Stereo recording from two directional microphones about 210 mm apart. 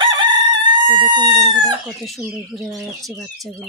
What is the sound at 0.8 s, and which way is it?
Speech, 20° right (ahead or behind).